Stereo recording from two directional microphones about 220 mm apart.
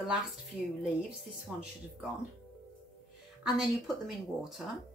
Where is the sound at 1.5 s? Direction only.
5° right (ahead or behind).